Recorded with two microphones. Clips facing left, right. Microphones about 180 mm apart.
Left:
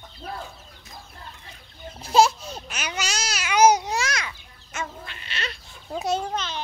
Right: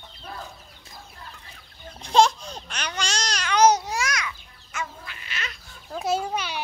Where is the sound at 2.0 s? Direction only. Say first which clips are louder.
Even; 5° left (ahead or behind).